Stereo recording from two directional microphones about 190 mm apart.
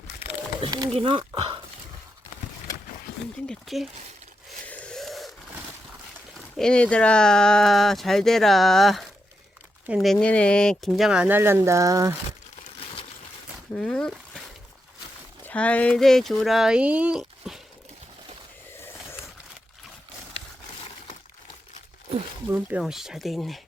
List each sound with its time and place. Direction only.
0.6 s speech: 25° right (ahead or behind)
3.4 s speech: centre (ahead or behind)
4.6 s wheeze: 5° left (ahead or behind)
6.6 s speech: 5° left (ahead or behind); by 12.1 s 15° right (ahead or behind)
12.8 s a sound: 30° left (ahead or behind)
13.7 s speech: 5° left (ahead or behind)
15.4 s speech: 5° left (ahead or behind)
22.5 s speech: 5° right (ahead or behind)